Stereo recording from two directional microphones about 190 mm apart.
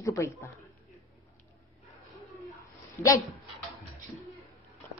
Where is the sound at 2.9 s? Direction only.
15° left (ahead or behind).